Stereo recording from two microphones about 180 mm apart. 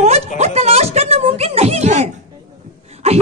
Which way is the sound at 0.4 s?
35° right (ahead or behind).